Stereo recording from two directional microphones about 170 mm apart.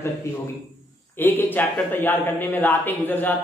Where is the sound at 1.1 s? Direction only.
10° left (ahead or behind).